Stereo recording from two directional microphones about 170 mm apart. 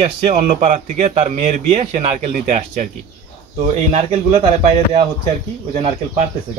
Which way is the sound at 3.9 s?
40° right (ahead or behind).